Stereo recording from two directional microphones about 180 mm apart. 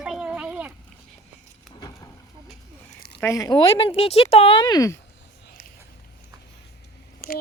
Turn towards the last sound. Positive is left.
turn(degrees=50)  # may be behind; listen again after turning